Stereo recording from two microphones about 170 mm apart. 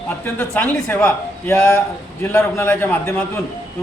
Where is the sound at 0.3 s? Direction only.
10° left (ahead or behind).